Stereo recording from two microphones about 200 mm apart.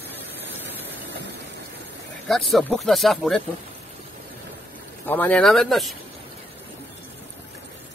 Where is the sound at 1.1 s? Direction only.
60° right (ahead or behind).